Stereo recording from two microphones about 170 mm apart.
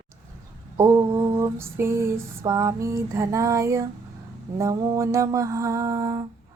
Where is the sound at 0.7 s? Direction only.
15° right (ahead or behind).